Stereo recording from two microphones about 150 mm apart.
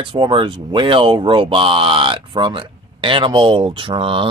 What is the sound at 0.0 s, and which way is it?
Speech, 35° right (ahead or behind).